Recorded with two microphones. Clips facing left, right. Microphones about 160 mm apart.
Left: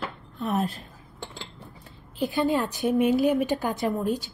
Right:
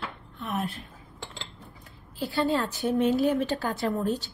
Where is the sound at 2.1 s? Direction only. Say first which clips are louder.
Left 2 dB; 20° left (ahead or behind).